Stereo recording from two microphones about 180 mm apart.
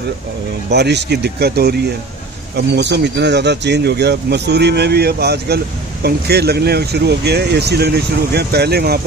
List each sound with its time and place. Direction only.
0.7 s speech: 70° right (ahead or behind)